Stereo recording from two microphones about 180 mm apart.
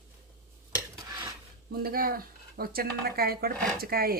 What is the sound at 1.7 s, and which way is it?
Speech, 55° right (ahead or behind).